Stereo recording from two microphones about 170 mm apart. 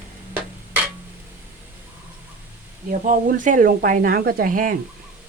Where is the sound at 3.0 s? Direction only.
50° right (ahead or behind).